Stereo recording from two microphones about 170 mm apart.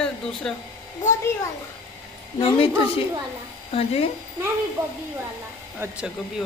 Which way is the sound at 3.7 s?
35° left (ahead or behind).